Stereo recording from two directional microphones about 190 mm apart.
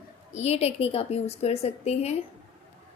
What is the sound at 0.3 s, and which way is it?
A woman's voice, 35° left (ahead or behind).